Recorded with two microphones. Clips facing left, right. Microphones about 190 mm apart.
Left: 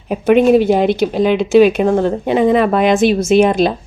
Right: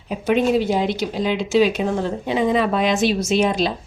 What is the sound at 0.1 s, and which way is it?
Speech, 60° left (ahead or behind).